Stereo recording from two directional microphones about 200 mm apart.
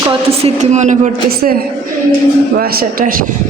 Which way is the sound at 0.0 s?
25° right (ahead or behind).